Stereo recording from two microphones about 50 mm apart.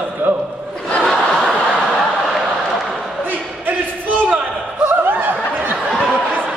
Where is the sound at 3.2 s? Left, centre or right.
Right.